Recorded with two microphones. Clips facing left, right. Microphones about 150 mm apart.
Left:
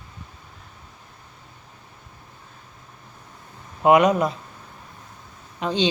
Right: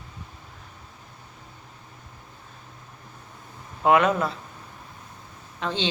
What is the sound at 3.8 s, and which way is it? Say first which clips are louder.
Speech: left 4 dB; 15° left (ahead or behind).